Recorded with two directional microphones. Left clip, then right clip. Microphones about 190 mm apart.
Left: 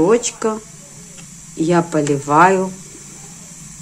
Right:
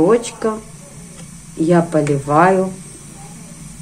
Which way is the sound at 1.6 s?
25° left (ahead or behind).